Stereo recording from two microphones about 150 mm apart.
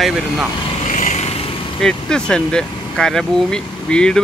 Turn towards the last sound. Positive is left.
turn(degrees=5)  # may be behind; listen again after turning